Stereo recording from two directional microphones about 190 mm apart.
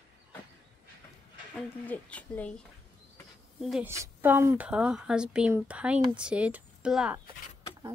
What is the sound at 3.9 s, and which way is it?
Speech, 15° right (ahead or behind).